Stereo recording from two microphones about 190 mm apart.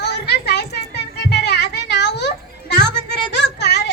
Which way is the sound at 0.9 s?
60° left (ahead or behind).